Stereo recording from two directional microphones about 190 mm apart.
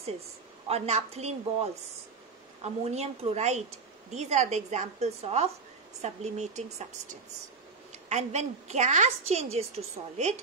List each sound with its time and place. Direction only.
0.7 s a woman's voice: 35° right (ahead or behind)
8.1 s a woman's voice: 35° right (ahead or behind)